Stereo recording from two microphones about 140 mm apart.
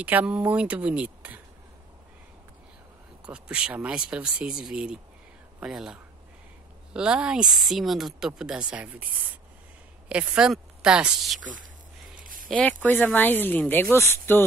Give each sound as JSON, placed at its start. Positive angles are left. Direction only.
{"t": 0.0, "sound": "speech", "side_deg": -10}
{"t": 3.3, "sound": "speech", "side_deg": -10}
{"t": 12.2, "sound": "a sound", "side_deg": -80}
{"t": 12.4, "sound": "speech", "side_deg": 10}